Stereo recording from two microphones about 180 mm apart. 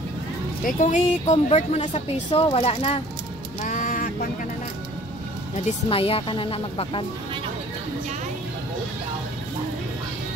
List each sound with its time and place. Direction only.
0.7 s speech: 45° left (ahead or behind)
3.6 s a sound: 45° left (ahead or behind)
5.7 s speech: 30° left (ahead or behind)